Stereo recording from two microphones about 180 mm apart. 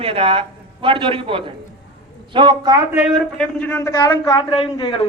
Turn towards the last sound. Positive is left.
turn(degrees=35)  # may be behind; listen again after turning